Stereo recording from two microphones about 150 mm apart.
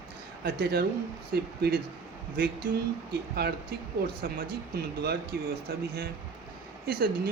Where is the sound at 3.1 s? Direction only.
90° right.